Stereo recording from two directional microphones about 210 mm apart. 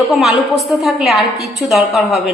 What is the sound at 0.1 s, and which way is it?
A woman's voice, centre (ahead or behind).